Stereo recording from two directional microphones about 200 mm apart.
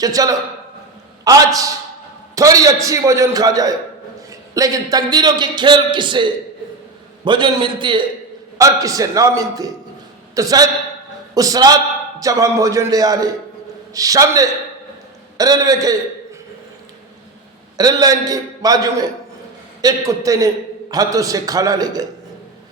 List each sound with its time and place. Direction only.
0.0 s a man's voice: 15° right (ahead or behind)
17.7 s a man's voice: 20° right (ahead or behind)